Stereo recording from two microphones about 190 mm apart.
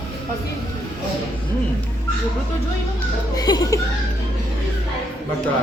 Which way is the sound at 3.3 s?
20° left (ahead or behind).